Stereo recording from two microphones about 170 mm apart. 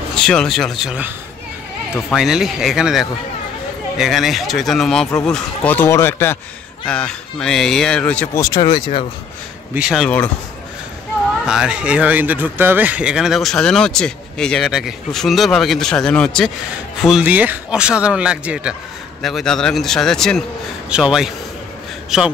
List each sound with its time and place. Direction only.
0.1 s speech: 5° left (ahead or behind)
2.1 s speech: centre (ahead or behind)
8.4 s speech: 25° left (ahead or behind)
9.8 s speech: 5° right (ahead or behind)
10.0 s speech: 10° left (ahead or behind)
11.4 s speech: 5° right (ahead or behind)